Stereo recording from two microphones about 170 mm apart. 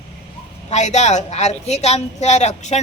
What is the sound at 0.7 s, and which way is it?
A woman's voice, 40° left (ahead or behind).